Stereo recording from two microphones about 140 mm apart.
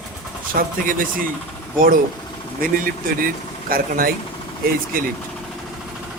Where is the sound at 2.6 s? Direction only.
90° right.